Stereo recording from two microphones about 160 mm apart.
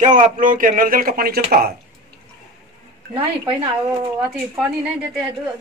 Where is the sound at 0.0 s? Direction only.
50° right (ahead or behind); by 1.7 s 70° right (ahead or behind).